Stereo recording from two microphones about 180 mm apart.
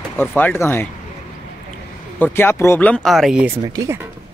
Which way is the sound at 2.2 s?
10° left (ahead or behind).